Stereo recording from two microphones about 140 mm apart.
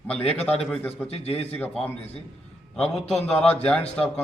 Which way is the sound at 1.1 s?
45° left (ahead or behind).